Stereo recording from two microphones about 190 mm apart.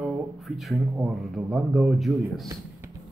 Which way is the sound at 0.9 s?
Centre (ahead or behind).